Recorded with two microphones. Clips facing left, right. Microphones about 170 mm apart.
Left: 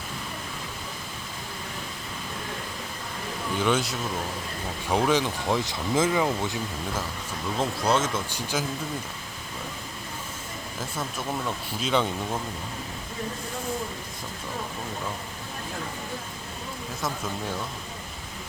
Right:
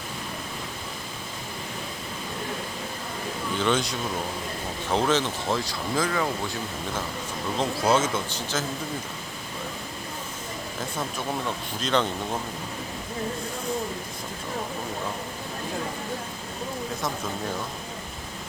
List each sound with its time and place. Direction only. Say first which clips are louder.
3.6 s speech: even; 5° left (ahead or behind)
7.6 s speech: right 2 dB; centre (ahead or behind)
8.3 s speech: even; 10° left (ahead or behind)
11.8 s speech: even; 5° left (ahead or behind)